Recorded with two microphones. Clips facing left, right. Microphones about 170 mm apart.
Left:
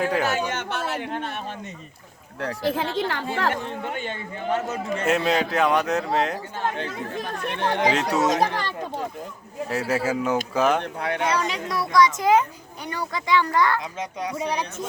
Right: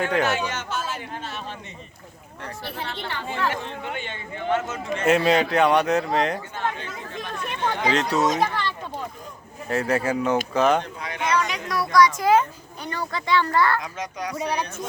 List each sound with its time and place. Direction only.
0.0 s speech: 5° left (ahead or behind)
0.3 s a man's voice: 55° left (ahead or behind)
2.4 s speech: 85° left
3.3 s speech: 45° left (ahead or behind)
5.0 s speech: centre (ahead or behind)
6.8 s speech: 40° left (ahead or behind)
7.6 s speech: 65° left (ahead or behind)
7.9 s speech: 10° left (ahead or behind)
8.5 s speech: 40° left (ahead or behind)
9.6 s speech: 5° left (ahead or behind)
11.2 s speech: 35° left (ahead or behind); by 13.7 s 15° left (ahead or behind)
14.0 s speech: 25° left (ahead or behind)